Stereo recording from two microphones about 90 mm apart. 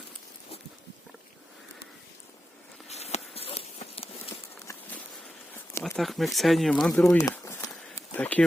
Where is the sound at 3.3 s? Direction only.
90° left.